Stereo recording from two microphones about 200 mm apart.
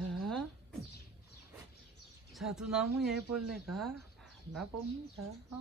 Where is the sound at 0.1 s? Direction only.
Centre (ahead or behind).